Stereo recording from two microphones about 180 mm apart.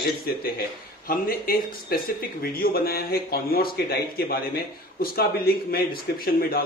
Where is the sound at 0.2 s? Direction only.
55° left (ahead or behind).